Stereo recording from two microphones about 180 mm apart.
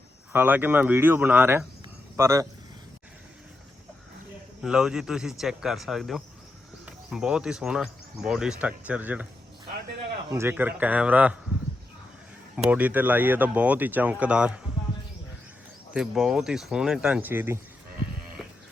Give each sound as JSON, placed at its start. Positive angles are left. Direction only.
{"t": 0.3, "sound": "speech", "side_deg": -10}
{"t": 4.6, "sound": "speech", "side_deg": -5}
{"t": 10.3, "sound": "speech", "side_deg": -10}
{"t": 12.5, "sound": "speech", "side_deg": -10}
{"t": 15.9, "sound": "speech", "side_deg": -5}
{"t": 18.4, "sound": "a sound", "side_deg": 0}